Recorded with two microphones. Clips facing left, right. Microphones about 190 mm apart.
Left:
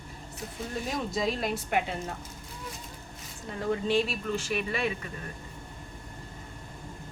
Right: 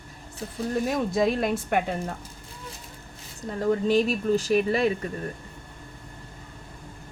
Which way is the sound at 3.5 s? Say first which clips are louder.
Right 5 dB; 40° right (ahead or behind).